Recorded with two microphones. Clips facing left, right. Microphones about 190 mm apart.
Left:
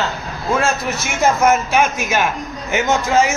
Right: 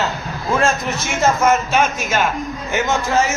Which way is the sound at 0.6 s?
10° left (ahead or behind).